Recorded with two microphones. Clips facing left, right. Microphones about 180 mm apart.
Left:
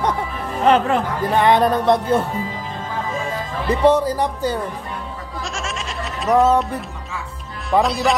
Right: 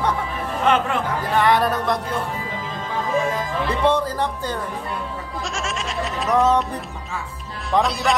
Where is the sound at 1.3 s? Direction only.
20° left (ahead or behind).